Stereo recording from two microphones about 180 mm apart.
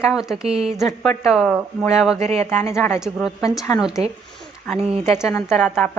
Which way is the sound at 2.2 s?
35° right (ahead or behind).